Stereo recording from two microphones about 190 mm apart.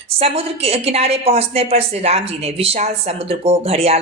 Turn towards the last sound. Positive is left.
turn(degrees=-30)  # may be behind; listen again after turning